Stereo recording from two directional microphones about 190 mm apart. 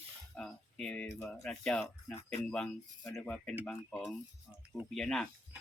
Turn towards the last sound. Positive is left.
turn(degrees=0)  # may be behind; listen again after turning